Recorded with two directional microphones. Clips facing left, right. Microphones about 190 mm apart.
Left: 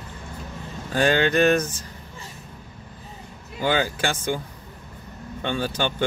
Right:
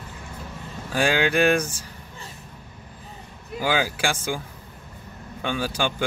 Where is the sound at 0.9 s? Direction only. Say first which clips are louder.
Left 2 dB; 10° right (ahead or behind).